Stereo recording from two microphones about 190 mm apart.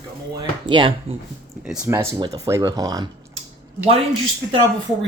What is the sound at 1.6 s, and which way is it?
Speech, 5° right (ahead or behind).